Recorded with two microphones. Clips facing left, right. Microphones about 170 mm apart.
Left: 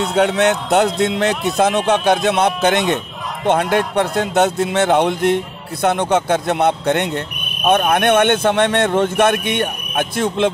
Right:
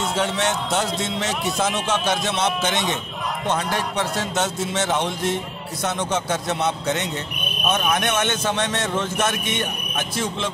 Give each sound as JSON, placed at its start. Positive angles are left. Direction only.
{"t": 0.1, "sound": "a man's voice", "side_deg": 60}